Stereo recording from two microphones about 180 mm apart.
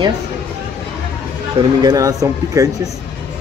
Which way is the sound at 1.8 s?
20° right (ahead or behind).